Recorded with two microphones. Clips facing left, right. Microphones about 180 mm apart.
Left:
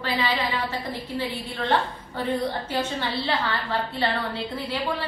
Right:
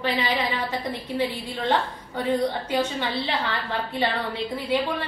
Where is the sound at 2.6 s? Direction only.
15° right (ahead or behind).